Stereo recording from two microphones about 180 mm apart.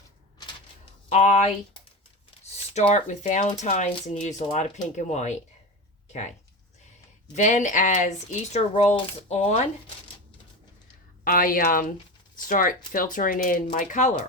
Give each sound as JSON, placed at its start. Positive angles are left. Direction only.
{"t": 1.1, "sound": "speech", "side_deg": 40}
{"t": 2.4, "sound": "speech", "side_deg": 40}
{"t": 7.3, "sound": "speech", "side_deg": 40}
{"t": 11.2, "sound": "speech", "side_deg": 50}